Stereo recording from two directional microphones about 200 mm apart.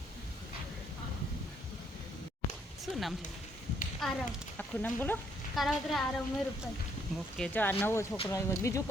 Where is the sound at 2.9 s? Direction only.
Centre (ahead or behind).